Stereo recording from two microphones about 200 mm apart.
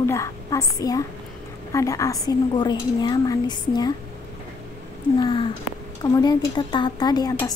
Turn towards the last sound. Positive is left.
turn(degrees=20)  # may be behind; listen again after turning